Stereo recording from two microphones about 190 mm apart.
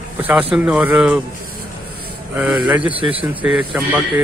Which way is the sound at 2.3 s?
5° right (ahead or behind).